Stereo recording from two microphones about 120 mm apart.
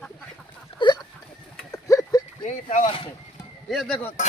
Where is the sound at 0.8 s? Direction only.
45° left (ahead or behind).